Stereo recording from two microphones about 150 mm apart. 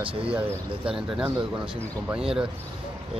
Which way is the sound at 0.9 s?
5° right (ahead or behind).